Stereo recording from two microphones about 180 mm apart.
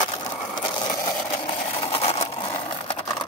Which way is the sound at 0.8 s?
25° left (ahead or behind).